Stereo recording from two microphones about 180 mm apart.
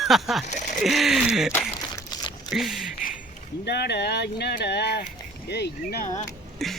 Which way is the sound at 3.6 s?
65° left (ahead or behind).